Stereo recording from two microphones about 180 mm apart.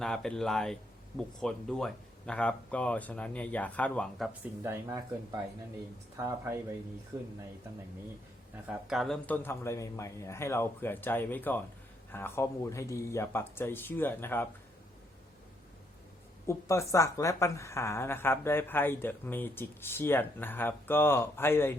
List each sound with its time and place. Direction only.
0.0 s a woman's voice: 5° left (ahead or behind)
4.6 s speech: 15° right (ahead or behind)
6.1 s speech: 15° right (ahead or behind)
8.6 s a woman's voice: centre (ahead or behind)
16.5 s a woman's voice: 15° left (ahead or behind)